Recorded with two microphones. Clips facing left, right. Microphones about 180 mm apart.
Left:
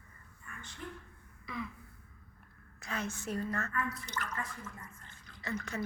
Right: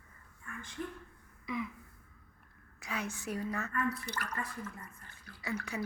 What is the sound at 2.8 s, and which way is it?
A woman's voice, 10° right (ahead or behind).